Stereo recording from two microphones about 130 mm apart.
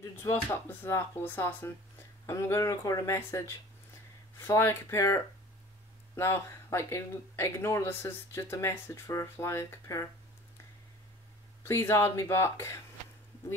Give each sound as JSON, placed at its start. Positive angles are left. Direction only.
{"t": 0.2, "sound": "speech", "side_deg": 20}
{"t": 11.6, "sound": "speech", "side_deg": 20}